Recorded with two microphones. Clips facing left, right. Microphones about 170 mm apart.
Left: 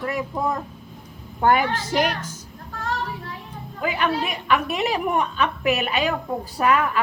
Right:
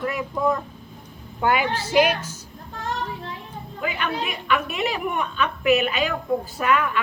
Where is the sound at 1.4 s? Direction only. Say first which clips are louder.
Left 2 dB; 45° left (ahead or behind).